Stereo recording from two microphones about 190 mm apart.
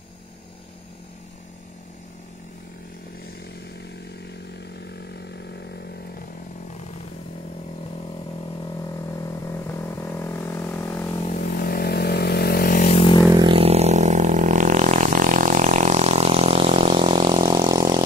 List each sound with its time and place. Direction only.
5.1 s chainsaw: 60° left (ahead or behind)
9.2 s vehicle: 15° left (ahead or behind)
11.2 s vehicle: 45° left (ahead or behind); by 13.2 s 30° left (ahead or behind)
13.3 s vehicle: 25° right (ahead or behind)